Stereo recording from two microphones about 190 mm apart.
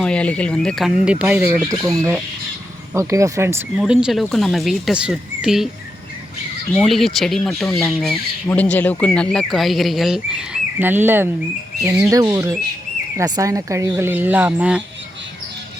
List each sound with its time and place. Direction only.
0.0 s speech: 5° left (ahead or behind); by 3.6 s 15° right (ahead or behind)
3.8 s speech: 5° right (ahead or behind)
6.7 s speech: centre (ahead or behind)